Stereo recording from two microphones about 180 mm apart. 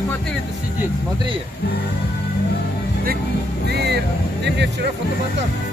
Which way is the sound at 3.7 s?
65° right (ahead or behind).